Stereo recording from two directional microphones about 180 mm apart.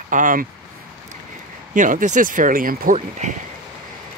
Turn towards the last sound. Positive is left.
turn(degrees=-45)  # may be behind; listen again after turning